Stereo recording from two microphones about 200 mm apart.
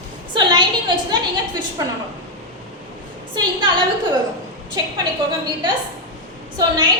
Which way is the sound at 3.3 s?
20° right (ahead or behind).